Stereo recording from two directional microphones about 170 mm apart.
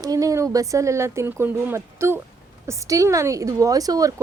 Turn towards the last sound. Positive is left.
turn(degrees=-20)  # may be behind; listen again after turning